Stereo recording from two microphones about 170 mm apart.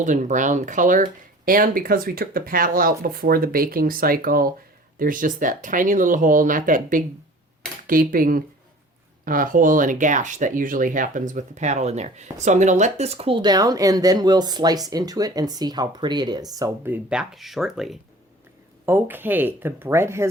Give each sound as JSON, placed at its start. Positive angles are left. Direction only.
{"t": 0.0, "sound": "speech", "side_deg": -45}
{"t": 18.9, "sound": "speech", "side_deg": -10}